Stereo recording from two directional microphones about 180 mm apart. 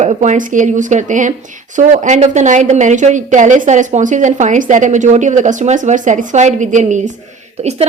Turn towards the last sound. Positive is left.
turn(degrees=-35)  # may be behind; listen again after turning